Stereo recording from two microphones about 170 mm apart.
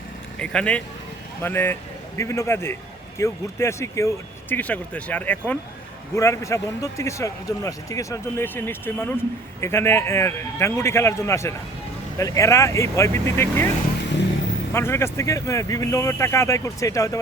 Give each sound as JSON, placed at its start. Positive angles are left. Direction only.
{"t": 0.3, "sound": "a man's voice", "side_deg": 5}
{"t": 14.7, "sound": "speech", "side_deg": 15}